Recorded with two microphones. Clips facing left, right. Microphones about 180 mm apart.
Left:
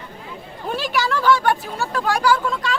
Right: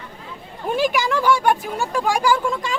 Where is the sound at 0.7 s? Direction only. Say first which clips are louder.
Right 3 dB; 15° right (ahead or behind).